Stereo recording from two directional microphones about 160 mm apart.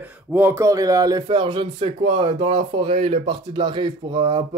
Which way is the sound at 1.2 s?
30° right (ahead or behind).